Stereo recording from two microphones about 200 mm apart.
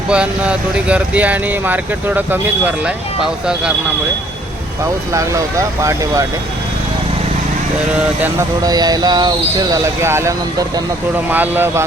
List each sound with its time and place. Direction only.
0.1 s speech: 5° right (ahead or behind)
5.1 s speech: 15° right (ahead or behind)
8.2 s speech: 20° right (ahead or behind)